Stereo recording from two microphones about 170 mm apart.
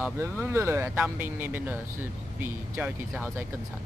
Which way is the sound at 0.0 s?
15° right (ahead or behind).